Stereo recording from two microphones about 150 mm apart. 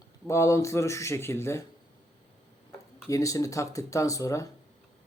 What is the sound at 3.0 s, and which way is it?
Speech, 20° left (ahead or behind).